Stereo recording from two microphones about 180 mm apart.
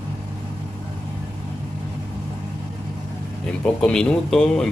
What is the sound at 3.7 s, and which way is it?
Speech, 5° left (ahead or behind).